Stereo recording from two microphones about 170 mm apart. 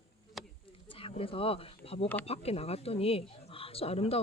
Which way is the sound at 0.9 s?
35° left (ahead or behind).